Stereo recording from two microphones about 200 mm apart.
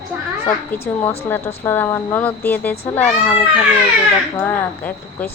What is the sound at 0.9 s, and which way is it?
Speech, 5° left (ahead or behind).